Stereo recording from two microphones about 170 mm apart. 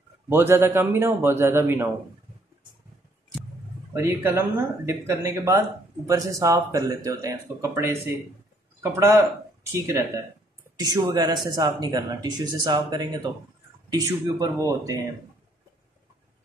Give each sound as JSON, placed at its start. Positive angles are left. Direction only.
{"t": 0.3, "sound": "speech", "side_deg": -15}
{"t": 3.9, "sound": "speech", "side_deg": -15}